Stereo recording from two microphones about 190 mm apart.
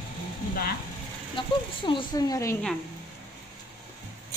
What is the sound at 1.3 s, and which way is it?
Speech, 25° left (ahead or behind).